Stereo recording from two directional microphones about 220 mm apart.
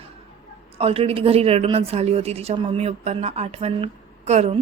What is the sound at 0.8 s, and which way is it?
Speech, 25° right (ahead or behind).